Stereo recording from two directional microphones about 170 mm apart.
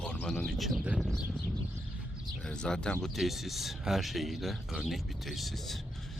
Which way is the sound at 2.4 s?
5° left (ahead or behind).